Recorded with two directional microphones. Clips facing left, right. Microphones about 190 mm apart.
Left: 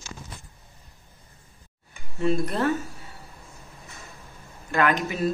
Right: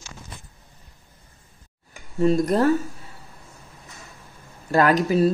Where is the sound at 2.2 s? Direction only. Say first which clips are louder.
Right 6 dB; 40° right (ahead or behind).